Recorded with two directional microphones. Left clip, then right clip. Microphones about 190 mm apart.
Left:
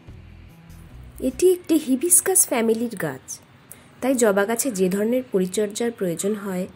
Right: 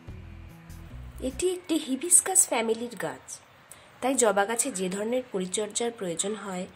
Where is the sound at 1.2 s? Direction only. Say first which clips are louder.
Left 10 dB; 20° left (ahead or behind).